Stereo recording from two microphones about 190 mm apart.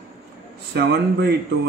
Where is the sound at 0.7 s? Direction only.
60° right (ahead or behind).